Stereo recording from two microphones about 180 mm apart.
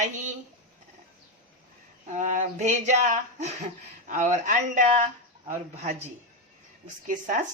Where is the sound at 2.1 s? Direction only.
45° right (ahead or behind).